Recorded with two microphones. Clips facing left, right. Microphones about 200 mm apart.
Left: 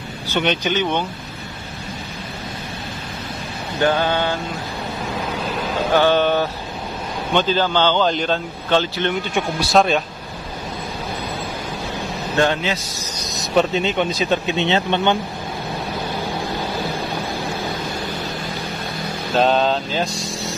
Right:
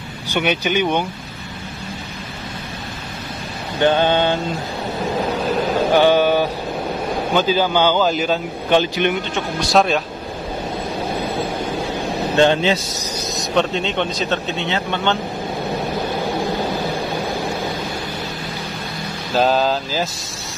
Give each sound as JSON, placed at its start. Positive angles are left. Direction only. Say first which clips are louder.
{"t": 0.3, "sound": "speech", "louder": "right 1 dB", "side_deg": -10}
{"t": 3.8, "sound": "mantra", "louder": "right 3 dB", "side_deg": -25}
{"t": 5.9, "sound": "speech", "louder": "right 1 dB", "side_deg": -10}
{"t": 9.3, "sound": "speech", "louder": "even", "side_deg": 5}
{"t": 12.4, "sound": "mantra", "louder": "right 4 dB", "side_deg": -25}
{"t": 13.3, "sound": "speech", "louder": "left 1 dB", "side_deg": 5}
{"t": 19.3, "sound": "speech", "louder": "even", "side_deg": 0}